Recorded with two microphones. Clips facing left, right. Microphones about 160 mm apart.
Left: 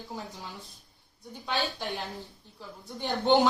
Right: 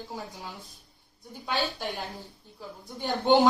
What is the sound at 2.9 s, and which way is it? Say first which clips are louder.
Speech: right 1 dB; 10° right (ahead or behind).